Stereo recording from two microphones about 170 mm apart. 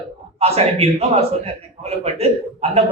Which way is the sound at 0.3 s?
35° right (ahead or behind).